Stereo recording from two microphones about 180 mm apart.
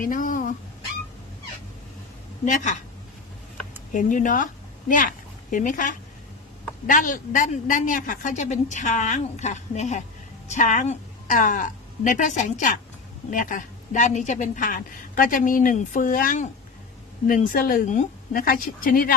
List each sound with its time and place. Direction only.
0.0 s chicken: 50° left (ahead or behind)
2.4 s a woman's voice: 40° left (ahead or behind)
3.9 s a woman's voice: 45° left (ahead or behind)